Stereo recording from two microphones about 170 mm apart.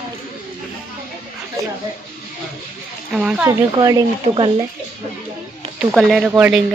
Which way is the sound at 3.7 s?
25° right (ahead or behind).